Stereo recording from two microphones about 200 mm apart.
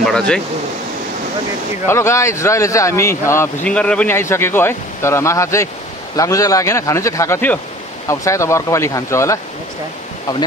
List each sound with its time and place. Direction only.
0.0 s speech: 5° left (ahead or behind)
1.9 s speech: 15° left (ahead or behind)